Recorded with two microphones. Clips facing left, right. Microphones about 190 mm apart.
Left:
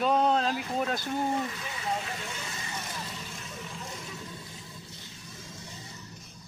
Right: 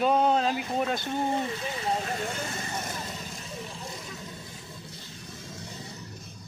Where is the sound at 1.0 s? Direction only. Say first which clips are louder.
Right 1 dB; 25° right (ahead or behind); by 2.9 s 50° right (ahead or behind).